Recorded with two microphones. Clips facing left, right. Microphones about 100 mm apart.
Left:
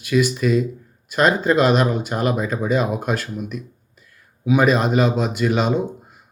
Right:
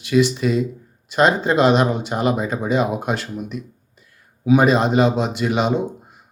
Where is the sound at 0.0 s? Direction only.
25° right (ahead or behind).